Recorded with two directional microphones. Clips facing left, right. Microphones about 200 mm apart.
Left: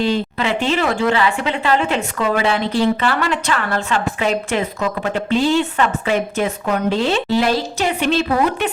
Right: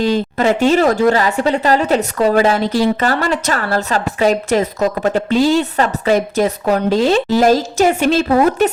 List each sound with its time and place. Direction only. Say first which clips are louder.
0.0 s a woman's voice: right 4 dB; 40° right (ahead or behind)